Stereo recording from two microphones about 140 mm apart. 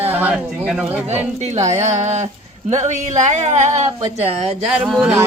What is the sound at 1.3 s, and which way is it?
Speech, 50° right (ahead or behind).